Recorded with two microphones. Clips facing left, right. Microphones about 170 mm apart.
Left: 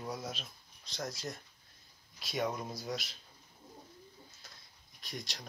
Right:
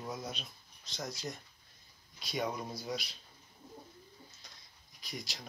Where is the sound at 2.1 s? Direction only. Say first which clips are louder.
Left 1 dB; centre (ahead or behind).